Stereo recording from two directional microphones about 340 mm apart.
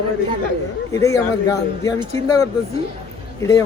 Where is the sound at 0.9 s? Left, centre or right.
Centre.